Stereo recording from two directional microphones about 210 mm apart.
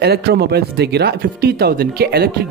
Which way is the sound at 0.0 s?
50° right (ahead or behind).